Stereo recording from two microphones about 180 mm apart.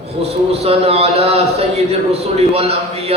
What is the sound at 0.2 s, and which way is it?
A man's voice, 35° right (ahead or behind).